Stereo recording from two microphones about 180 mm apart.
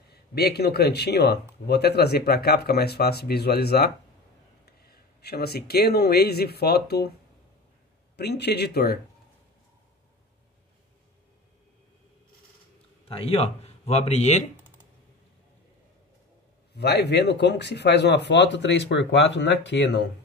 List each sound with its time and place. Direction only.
0.1 s speech: 60° left (ahead or behind)
8.2 s speech: 65° left (ahead or behind)
13.1 s speech: 30° left (ahead or behind)
16.7 s speech: 65° left (ahead or behind)